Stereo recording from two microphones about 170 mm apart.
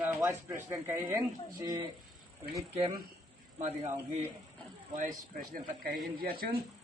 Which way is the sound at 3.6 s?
40° right (ahead or behind).